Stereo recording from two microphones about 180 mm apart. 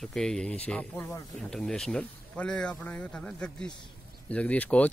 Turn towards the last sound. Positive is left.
turn(degrees=10)  # may be behind; listen again after turning